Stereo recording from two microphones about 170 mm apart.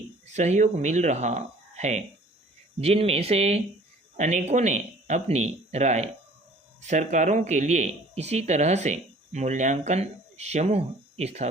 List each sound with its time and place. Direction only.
0.3 s speech: 40° right (ahead or behind)